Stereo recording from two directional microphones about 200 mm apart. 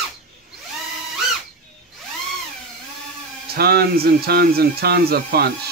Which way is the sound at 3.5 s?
50° right (ahead or behind).